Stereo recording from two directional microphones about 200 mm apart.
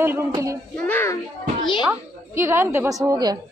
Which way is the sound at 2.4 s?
10° right (ahead or behind).